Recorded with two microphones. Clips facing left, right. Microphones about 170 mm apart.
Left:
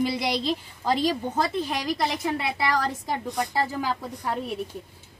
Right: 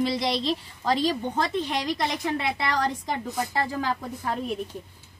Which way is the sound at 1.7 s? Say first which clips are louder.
Even; 25° right (ahead or behind).